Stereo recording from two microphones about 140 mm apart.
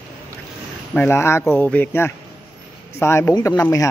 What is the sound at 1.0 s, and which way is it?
A man's voice, 15° left (ahead or behind).